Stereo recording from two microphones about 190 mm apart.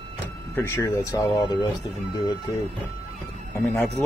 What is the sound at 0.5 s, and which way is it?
Speech, 15° left (ahead or behind).